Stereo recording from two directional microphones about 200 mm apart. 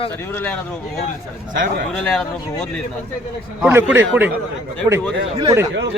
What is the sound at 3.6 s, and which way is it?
Speech, 10° right (ahead or behind).